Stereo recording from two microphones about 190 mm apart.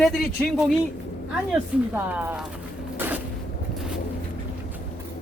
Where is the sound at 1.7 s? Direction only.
5° right (ahead or behind).